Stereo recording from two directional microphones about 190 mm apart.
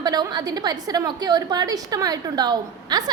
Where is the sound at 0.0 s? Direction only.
20° right (ahead or behind).